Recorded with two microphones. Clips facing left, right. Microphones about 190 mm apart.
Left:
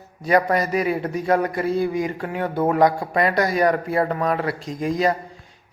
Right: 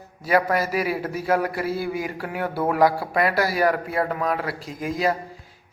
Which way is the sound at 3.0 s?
5° right (ahead or behind).